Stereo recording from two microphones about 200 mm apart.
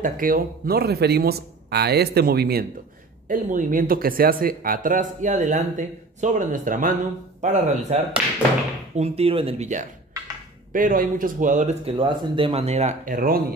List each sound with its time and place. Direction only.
0.0 s speech: 45° right (ahead or behind)